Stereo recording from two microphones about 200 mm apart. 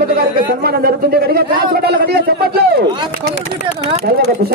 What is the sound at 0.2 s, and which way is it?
A man's voice, 50° right (ahead or behind).